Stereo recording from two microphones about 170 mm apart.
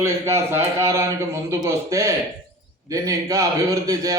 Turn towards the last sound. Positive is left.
turn(degrees=-20)  # may be behind; listen again after turning